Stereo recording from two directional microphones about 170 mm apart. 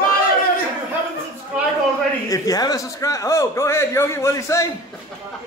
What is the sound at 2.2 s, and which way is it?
A man's voice, 20° left (ahead or behind).